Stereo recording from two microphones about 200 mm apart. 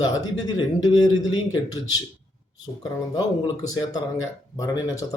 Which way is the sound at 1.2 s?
80° left.